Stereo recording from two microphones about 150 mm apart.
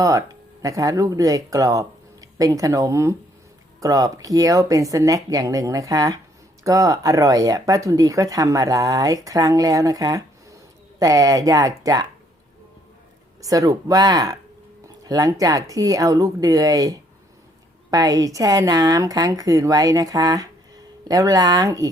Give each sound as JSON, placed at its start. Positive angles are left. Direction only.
{"t": 0.0, "sound": "speech", "side_deg": -20}
{"t": 13.4, "sound": "speech", "side_deg": -25}